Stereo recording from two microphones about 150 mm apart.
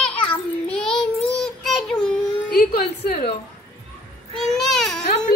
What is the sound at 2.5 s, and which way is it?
Speech, 80° left.